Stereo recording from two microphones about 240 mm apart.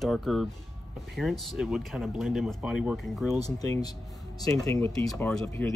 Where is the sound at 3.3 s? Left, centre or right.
Centre.